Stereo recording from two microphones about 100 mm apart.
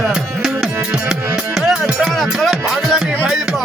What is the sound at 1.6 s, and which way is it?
Music, 5° right (ahead or behind).